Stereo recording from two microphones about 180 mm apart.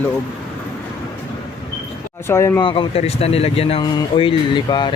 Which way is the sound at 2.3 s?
15° left (ahead or behind).